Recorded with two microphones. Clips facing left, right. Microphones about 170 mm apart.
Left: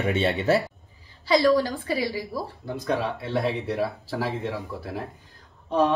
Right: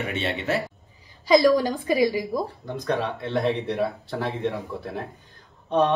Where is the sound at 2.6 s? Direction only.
5° left (ahead or behind).